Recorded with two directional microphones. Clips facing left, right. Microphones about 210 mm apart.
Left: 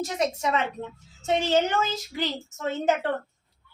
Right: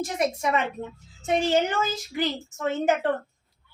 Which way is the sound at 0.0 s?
10° right (ahead or behind).